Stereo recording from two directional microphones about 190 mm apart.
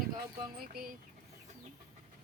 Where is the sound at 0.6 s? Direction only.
50° right (ahead or behind).